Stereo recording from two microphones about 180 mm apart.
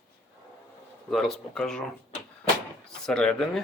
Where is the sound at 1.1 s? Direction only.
Centre (ahead or behind).